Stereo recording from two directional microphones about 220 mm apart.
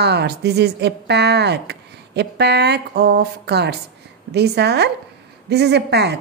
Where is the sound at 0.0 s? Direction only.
50° right (ahead or behind).